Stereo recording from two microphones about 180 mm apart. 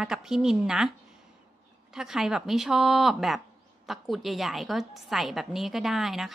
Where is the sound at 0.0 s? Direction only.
5° right (ahead or behind).